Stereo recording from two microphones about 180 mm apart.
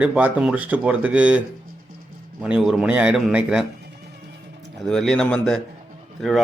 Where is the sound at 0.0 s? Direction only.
5° right (ahead or behind).